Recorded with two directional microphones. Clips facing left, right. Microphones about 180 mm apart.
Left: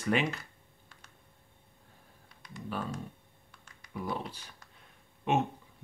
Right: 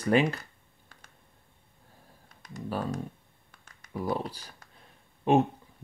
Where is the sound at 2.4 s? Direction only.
40° right (ahead or behind).